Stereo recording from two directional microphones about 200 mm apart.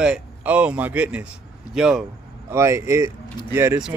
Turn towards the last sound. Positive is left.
turn(degrees=-10)  # may be behind; listen again after turning